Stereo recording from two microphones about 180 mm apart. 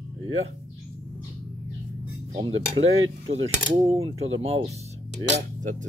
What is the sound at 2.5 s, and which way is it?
Cutlery, 90° right.